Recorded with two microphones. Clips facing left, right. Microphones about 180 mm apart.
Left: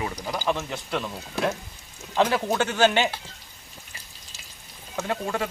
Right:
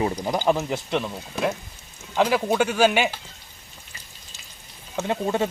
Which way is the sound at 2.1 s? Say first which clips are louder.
Right 2 dB; 5° right (ahead or behind).